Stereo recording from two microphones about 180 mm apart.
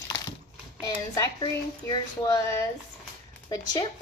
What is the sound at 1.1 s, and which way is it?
Speech, 20° left (ahead or behind).